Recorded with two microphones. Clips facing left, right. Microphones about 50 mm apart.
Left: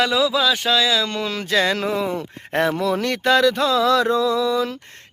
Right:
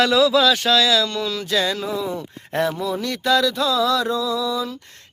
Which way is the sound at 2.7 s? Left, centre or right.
Left.